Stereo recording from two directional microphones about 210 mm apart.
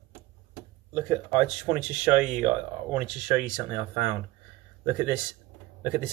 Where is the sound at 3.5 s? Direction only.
15° right (ahead or behind).